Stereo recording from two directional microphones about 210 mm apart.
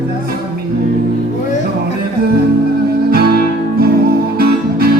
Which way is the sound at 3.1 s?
45° right (ahead or behind).